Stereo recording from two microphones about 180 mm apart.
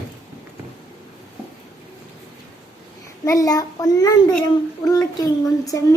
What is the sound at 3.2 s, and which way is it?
Speech, 20° left (ahead or behind).